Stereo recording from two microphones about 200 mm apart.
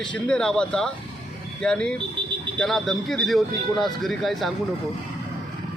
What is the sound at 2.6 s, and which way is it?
Speech, centre (ahead or behind).